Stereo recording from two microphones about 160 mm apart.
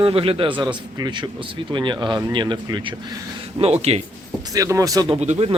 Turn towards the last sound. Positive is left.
turn(degrees=-40)  # may be behind; listen again after turning